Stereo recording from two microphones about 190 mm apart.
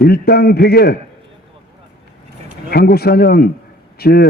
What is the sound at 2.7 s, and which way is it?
A man's voice, 55° left (ahead or behind).